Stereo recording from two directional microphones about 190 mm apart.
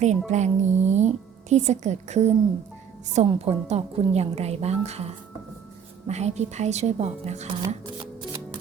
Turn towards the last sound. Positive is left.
turn(degrees=-35)  # may be behind; listen again after turning